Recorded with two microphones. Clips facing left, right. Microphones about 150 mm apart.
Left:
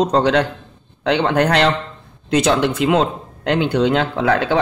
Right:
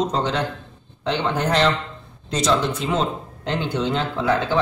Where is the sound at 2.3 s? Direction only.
60° left (ahead or behind).